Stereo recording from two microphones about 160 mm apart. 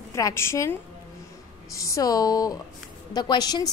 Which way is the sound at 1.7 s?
20° left (ahead or behind).